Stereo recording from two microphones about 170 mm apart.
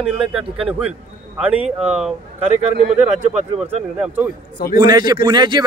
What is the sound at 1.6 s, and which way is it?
Speech, 35° right (ahead or behind).